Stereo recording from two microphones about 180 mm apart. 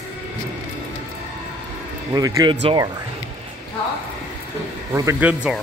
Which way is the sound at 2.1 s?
20° right (ahead or behind).